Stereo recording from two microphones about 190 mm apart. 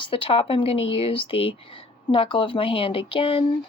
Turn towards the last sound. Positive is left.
turn(degrees=30)  # may be behind; listen again after turning